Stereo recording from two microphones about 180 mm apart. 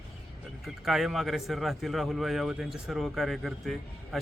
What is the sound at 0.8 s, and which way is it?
A man's voice, centre (ahead or behind).